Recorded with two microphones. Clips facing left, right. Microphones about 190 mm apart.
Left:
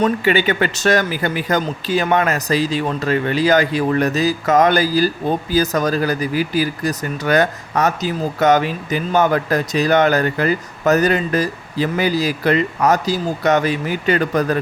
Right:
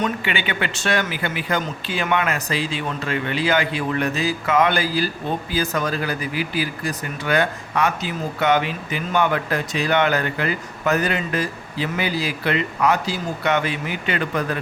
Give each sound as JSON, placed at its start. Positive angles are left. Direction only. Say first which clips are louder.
{"t": 0.0, "sound": "speech", "louder": "left 8 dB", "side_deg": 40}